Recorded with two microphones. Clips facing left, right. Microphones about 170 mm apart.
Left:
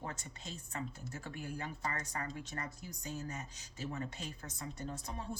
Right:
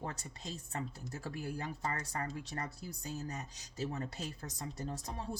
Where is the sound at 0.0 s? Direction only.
35° right (ahead or behind).